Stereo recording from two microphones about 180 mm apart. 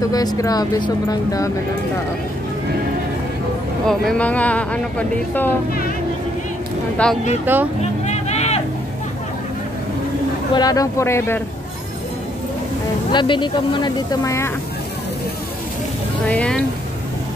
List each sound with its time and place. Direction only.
0.0 s speech: 20° left (ahead or behind)
3.8 s speech: 5° left (ahead or behind)
7.0 s speech: 5° left (ahead or behind)
7.5 s speech: 10° right (ahead or behind)
8.0 s vehicle: 40° left (ahead or behind)
10.5 s speech: 20° left (ahead or behind)
13.1 s speech: 25° left (ahead or behind)
16.3 s speech: 5° left (ahead or behind)